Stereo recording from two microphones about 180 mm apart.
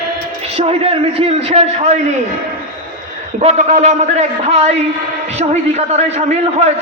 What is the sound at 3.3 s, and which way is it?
A man's voice, 40° right (ahead or behind).